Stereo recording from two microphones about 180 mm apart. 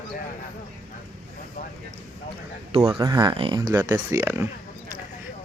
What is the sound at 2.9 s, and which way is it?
Speech, 25° right (ahead or behind).